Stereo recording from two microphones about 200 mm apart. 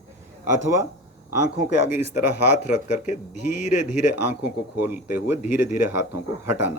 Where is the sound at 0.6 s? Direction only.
15° right (ahead or behind).